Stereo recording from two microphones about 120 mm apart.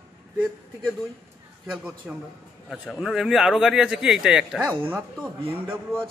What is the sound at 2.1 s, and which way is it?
A man's voice, 10° right (ahead or behind).